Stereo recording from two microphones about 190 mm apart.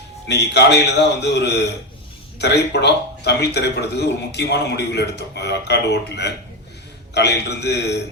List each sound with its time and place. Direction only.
0.5 s a man's voice: 60° left (ahead or behind)